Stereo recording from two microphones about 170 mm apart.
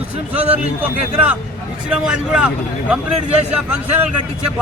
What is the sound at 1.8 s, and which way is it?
A man's voice, 5° right (ahead or behind).